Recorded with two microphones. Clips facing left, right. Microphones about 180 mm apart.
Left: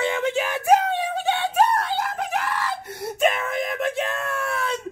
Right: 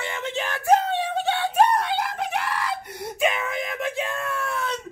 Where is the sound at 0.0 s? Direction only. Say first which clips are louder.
Left 6 dB; 15° left (ahead or behind).